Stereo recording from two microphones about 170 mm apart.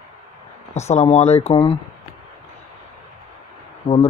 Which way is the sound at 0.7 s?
40° left (ahead or behind).